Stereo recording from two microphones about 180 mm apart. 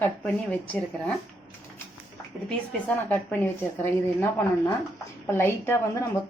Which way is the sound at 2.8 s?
10° left (ahead or behind).